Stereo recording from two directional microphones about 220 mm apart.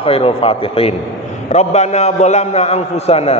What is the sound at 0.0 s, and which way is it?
A man's voice, 25° left (ahead or behind).